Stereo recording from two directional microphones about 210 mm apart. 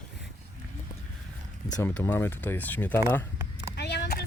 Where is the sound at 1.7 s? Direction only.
10° left (ahead or behind).